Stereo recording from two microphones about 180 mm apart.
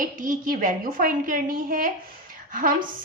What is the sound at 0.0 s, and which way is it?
A woman's voice, 45° right (ahead or behind).